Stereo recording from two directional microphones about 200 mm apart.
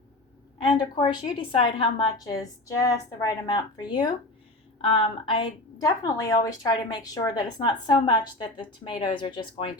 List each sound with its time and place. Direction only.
0.6 s a woman's voice: 20° left (ahead or behind)